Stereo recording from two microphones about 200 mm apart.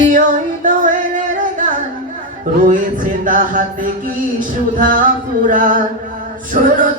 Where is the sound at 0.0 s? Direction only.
40° right (ahead or behind).